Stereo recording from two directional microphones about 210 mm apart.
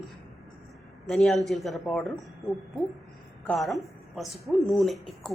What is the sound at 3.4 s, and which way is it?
Speech, centre (ahead or behind).